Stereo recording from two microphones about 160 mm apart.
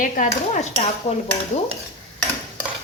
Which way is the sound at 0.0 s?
50° left (ahead or behind).